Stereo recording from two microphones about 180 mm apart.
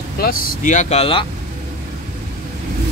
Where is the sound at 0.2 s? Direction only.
50° left (ahead or behind); by 1.2 s 30° left (ahead or behind).